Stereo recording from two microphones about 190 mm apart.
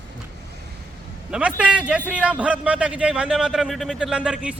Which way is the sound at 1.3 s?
5° right (ahead or behind).